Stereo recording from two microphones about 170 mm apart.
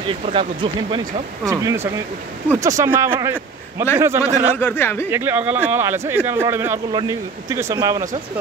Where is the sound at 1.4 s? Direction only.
15° right (ahead or behind).